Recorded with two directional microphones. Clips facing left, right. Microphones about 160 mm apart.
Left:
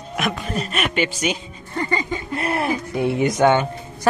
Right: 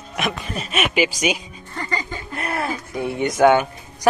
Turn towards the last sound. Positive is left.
turn(degrees=-10)  # may be behind; listen again after turning